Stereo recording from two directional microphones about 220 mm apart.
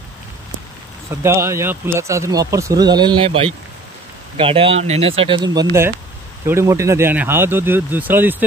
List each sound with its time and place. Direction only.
1.2 s speech: 10° right (ahead or behind)